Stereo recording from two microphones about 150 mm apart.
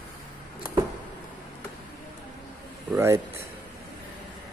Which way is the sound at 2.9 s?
15° right (ahead or behind).